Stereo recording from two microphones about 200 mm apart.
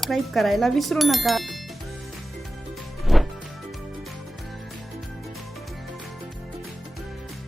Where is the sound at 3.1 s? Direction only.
Centre (ahead or behind).